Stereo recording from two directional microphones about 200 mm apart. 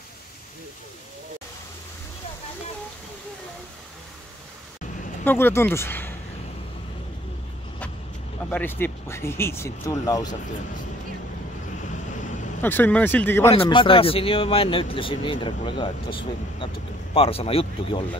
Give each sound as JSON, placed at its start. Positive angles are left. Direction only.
{"t": 5.2, "sound": "speech", "side_deg": 10}
{"t": 8.5, "sound": "speech", "side_deg": 10}
{"t": 12.6, "sound": "speech", "side_deg": 10}
{"t": 13.5, "sound": "speech", "side_deg": 25}